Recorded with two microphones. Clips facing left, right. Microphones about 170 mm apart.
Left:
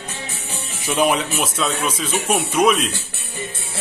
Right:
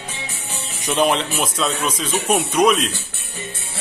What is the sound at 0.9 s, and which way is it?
Speech, 10° left (ahead or behind).